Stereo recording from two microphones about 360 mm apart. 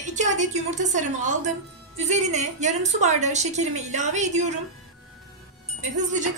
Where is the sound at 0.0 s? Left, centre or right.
Centre.